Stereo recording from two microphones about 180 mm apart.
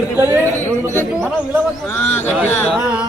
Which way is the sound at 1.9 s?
10° left (ahead or behind).